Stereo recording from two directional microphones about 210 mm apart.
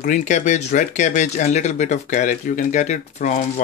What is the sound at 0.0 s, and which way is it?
Speech, 35° left (ahead or behind).